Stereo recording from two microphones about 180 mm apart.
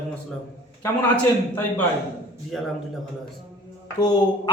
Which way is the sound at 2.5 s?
Centre (ahead or behind).